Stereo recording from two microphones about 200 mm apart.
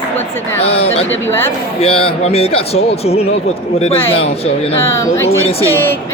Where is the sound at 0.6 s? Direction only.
30° left (ahead or behind).